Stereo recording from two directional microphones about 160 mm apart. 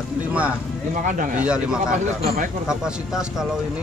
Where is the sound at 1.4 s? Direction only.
5° right (ahead or behind).